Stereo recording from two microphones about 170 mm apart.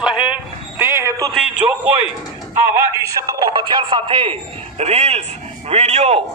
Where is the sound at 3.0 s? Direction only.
20° right (ahead or behind); by 6.2 s 40° right (ahead or behind).